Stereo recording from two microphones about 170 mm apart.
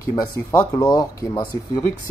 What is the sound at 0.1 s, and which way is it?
Speech, 25° left (ahead or behind).